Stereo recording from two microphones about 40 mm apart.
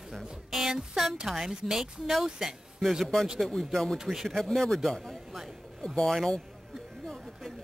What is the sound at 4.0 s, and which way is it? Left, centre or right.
Speech, centre.